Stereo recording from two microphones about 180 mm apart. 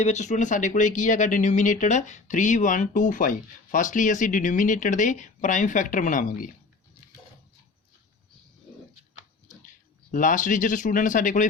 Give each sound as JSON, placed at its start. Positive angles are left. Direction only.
{"t": 0.0, "sound": "speech", "side_deg": 40}
{"t": 10.1, "sound": "speech", "side_deg": 45}